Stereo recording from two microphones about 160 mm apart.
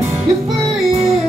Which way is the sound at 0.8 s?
40° right (ahead or behind).